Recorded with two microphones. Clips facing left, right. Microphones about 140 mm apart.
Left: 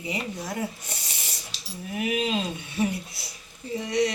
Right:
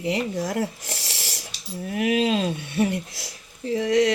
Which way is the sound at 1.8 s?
65° right (ahead or behind).